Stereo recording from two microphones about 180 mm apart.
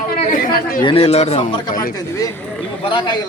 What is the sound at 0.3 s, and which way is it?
Speech, 55° left (ahead or behind).